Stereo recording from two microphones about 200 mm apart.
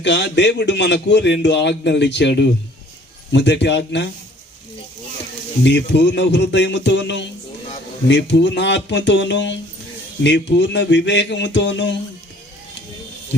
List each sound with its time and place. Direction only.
0.0 s a man's voice: 60° left (ahead or behind)
5.6 s a man's voice: 60° left (ahead or behind)